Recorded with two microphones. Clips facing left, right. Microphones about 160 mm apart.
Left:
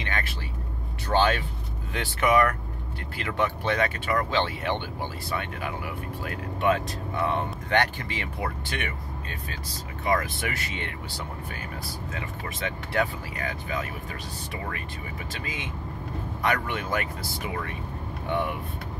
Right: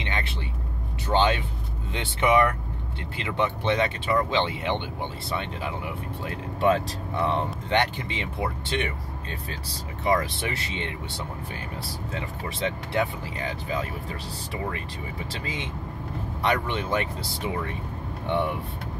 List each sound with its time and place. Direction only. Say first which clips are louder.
0.0 s vehicle: right 1 dB; 20° right (ahead or behind)
1.0 s speech: right 1 dB; 20° right (ahead or behind)
10.1 s speech: left 1 dB; 25° right (ahead or behind)
15.4 s speech: right 2 dB; 30° right (ahead or behind)